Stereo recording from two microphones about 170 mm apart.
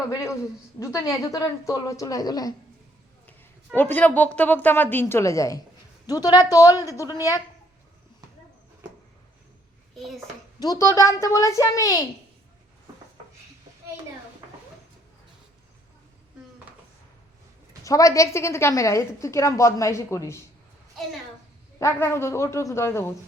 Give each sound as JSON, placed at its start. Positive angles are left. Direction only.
{"t": 0.1, "sound": "a woman's voice", "side_deg": 15}
{"t": 3.2, "sound": "a woman's voice", "side_deg": 10}
{"t": 10.6, "sound": "a woman's voice", "side_deg": 20}
{"t": 17.8, "sound": "a woman's voice", "side_deg": 20}
{"t": 21.8, "sound": "a woman's voice", "side_deg": 15}